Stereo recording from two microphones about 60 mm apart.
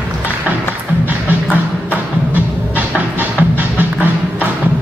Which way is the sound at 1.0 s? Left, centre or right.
Right.